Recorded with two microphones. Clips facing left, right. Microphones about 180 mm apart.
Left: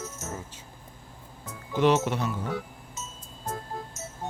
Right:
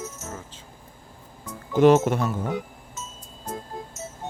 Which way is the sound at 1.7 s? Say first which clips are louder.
Right 6 dB; 45° right (ahead or behind).